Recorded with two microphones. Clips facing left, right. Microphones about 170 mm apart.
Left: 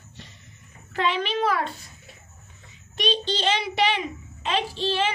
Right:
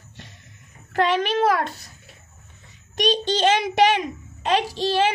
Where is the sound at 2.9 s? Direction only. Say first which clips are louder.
Right 4 dB; 45° right (ahead or behind).